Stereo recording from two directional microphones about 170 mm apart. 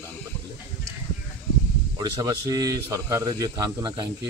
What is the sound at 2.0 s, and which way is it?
A man's voice, 20° right (ahead or behind).